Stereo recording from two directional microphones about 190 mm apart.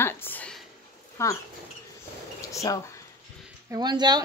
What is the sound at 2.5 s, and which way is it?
Speech, 20° left (ahead or behind).